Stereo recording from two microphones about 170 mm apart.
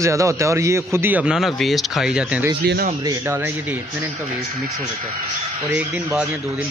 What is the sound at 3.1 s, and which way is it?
Speech, 15° right (ahead or behind).